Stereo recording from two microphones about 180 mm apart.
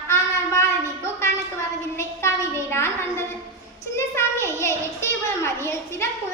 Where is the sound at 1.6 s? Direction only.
15° left (ahead or behind).